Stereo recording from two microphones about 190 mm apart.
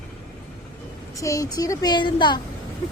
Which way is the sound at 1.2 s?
15° left (ahead or behind).